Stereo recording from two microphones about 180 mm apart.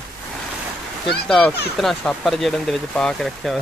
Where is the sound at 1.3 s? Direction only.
Centre (ahead or behind).